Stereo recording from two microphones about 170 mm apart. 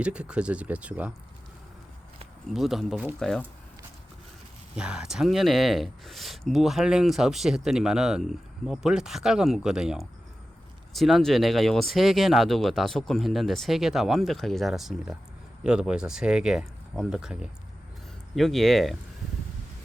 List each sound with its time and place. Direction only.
0.0 s speech: 5° right (ahead or behind)
2.5 s speech: centre (ahead or behind)
4.8 s speech: 5° right (ahead or behind)